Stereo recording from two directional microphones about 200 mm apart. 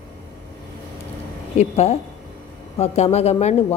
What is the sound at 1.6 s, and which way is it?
Speech, 35° left (ahead or behind).